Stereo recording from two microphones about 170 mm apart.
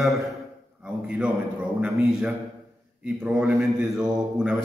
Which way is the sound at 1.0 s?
5° right (ahead or behind).